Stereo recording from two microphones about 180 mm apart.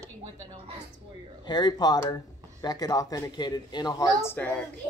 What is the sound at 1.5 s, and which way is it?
Speech, 25° left (ahead or behind).